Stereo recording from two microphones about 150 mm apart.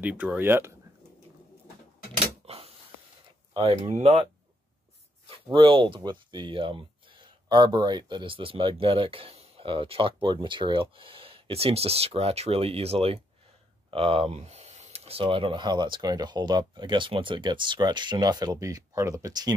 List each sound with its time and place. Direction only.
0.0 s speech: 10° right (ahead or behind)
2.4 s a sound: 40° right (ahead or behind)
4.0 s speech: 40° right (ahead or behind)
5.5 s speech: 30° right (ahead or behind)